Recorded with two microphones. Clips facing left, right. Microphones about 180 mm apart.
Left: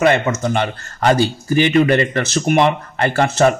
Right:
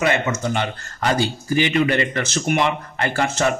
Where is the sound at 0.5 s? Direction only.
50° left (ahead or behind).